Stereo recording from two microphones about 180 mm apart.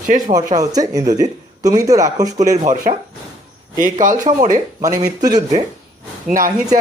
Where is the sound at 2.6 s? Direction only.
45° right (ahead or behind).